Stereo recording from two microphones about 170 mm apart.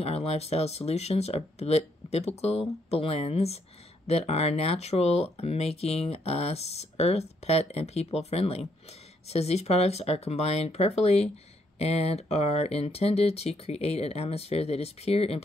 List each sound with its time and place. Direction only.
0.0 s speech: 35° left (ahead or behind)